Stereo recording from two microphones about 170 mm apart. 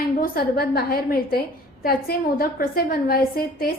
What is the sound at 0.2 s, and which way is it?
A woman's voice, 60° left (ahead or behind).